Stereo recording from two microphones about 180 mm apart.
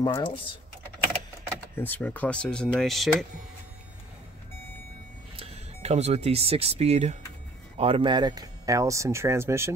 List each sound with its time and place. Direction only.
0.0 s speech: 25° left (ahead or behind)
1.8 s speech: 10° left (ahead or behind)
5.3 s speech: 35° right (ahead or behind); by 9.7 s 15° right (ahead or behind)